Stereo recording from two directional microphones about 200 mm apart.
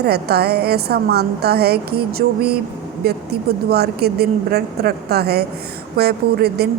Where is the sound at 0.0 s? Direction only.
55° right (ahead or behind).